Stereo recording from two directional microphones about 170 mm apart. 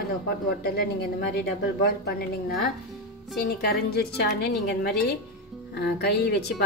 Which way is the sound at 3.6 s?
70° left (ahead or behind).